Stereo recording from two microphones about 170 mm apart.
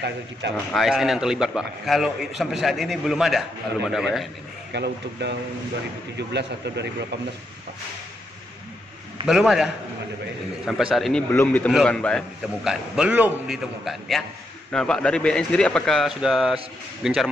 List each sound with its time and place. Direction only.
0.4 s a man's voice: 85° right
0.7 s a man's voice: centre (ahead or behind)
4.7 s a man's voice: 80° right
9.3 s a man's voice: centre (ahead or behind)
10.7 s a man's voice: centre (ahead or behind)